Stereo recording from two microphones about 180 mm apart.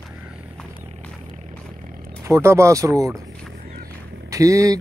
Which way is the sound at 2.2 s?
15° right (ahead or behind).